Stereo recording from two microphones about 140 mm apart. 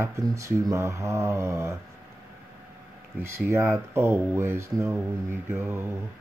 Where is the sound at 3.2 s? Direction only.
20° right (ahead or behind).